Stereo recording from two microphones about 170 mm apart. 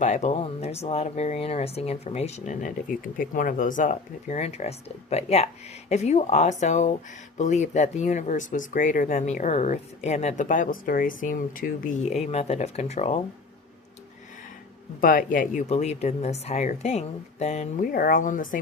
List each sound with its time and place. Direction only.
0.0 s speech: 45° left (ahead or behind)
12.2 s speech: 40° left (ahead or behind)
15.0 s speech: 55° left (ahead or behind)